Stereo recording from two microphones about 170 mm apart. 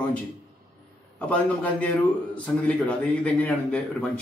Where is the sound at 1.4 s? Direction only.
10° left (ahead or behind).